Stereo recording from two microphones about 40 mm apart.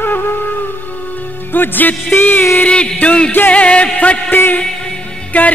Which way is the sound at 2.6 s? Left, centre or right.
Left.